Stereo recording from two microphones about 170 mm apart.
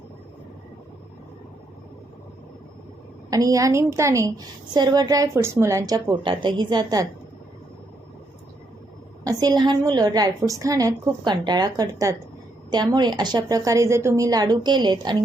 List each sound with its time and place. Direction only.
3.2 s a woman's voice: 20° right (ahead or behind)
9.2 s a woman's voice: 20° right (ahead or behind)